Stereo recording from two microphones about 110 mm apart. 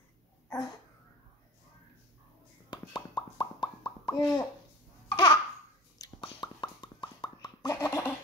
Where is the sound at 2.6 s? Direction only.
40° left (ahead or behind).